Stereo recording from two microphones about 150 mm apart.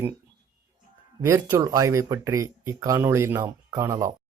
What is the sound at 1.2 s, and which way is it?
Speech, 20° right (ahead or behind).